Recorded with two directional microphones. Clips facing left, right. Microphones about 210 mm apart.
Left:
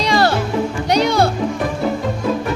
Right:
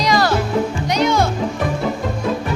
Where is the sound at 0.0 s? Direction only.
25° left (ahead or behind).